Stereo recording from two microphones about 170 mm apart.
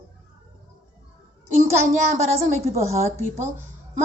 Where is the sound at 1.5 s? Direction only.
45° right (ahead or behind).